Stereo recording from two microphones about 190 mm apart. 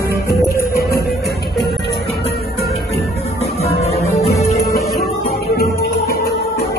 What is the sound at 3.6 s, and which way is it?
Music, 35° left (ahead or behind).